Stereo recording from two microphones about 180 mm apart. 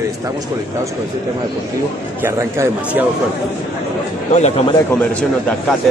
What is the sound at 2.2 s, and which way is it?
Speech, 15° right (ahead or behind).